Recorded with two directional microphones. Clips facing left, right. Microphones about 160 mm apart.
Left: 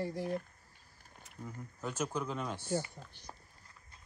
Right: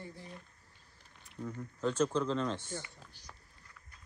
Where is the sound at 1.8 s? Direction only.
10° left (ahead or behind).